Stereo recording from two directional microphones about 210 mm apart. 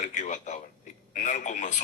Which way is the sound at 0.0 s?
35° left (ahead or behind).